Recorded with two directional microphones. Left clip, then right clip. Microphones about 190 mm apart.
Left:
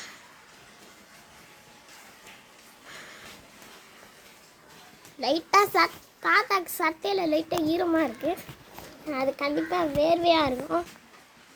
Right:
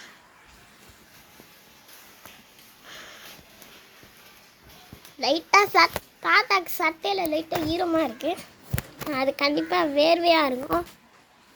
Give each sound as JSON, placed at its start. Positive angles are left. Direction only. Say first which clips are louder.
{"t": 2.8, "sound": "a sound", "louder": "right 2 dB", "side_deg": 0}
{"t": 5.2, "sound": "a child's voice", "louder": "right 2 dB", "side_deg": 0}
{"t": 9.1, "sound": "a child's voice", "louder": "right 3 dB", "side_deg": -15}